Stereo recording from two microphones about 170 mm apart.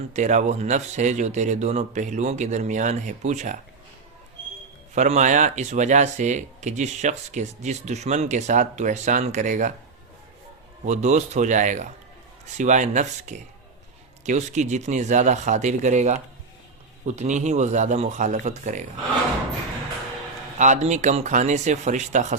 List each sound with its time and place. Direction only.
0.1 s speech: 45° right (ahead or behind)
4.9 s speech: 45° right (ahead or behind)
10.8 s speech: 45° right (ahead or behind)
20.6 s speech: 45° right (ahead or behind)